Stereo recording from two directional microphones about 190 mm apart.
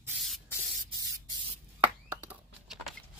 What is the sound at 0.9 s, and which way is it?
Spray, 20° right (ahead or behind).